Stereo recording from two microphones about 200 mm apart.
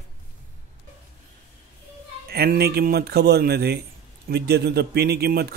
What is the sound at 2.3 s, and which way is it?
Speech, 50° right (ahead or behind).